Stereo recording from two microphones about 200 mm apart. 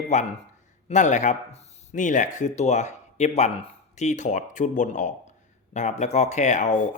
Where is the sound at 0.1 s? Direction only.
35° left (ahead or behind).